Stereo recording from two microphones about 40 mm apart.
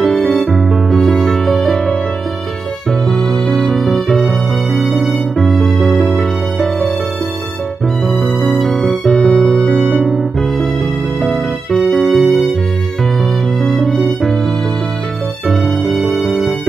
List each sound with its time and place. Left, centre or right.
0.0 s music: centre
3.1 s music: centre
5.4 s music: centre
8.1 s music: centre
9.0 s music: centre
10.0 s music: centre
13.6 s music: centre
15.8 s music: centre